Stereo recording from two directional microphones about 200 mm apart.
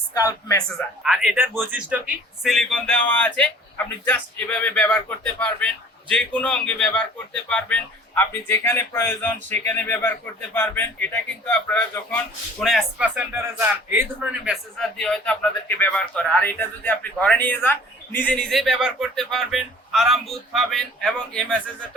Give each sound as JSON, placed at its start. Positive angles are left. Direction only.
{"t": 0.1, "sound": "speech", "side_deg": 15}
{"t": 1.0, "sound": "a man's voice", "side_deg": 0}